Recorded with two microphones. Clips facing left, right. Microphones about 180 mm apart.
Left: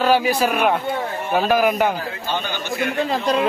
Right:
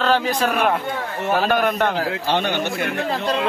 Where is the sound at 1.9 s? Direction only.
75° right (ahead or behind); by 2.8 s 60° right (ahead or behind).